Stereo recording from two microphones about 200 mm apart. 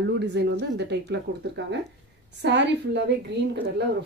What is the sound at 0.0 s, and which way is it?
Speech, 55° right (ahead or behind).